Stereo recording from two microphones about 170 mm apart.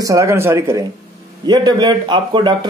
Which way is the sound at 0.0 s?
20° right (ahead or behind).